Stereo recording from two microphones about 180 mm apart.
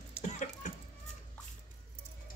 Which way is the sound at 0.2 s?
40° left (ahead or behind).